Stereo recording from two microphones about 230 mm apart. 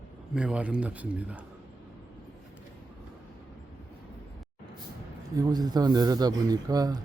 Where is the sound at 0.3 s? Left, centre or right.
Centre.